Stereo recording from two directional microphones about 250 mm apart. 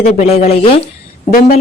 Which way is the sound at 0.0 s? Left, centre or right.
Left.